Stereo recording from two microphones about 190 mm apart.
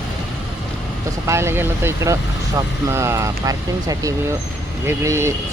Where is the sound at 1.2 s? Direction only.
15° right (ahead or behind).